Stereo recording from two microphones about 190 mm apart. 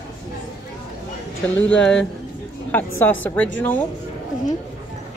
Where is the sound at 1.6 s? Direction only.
5° left (ahead or behind).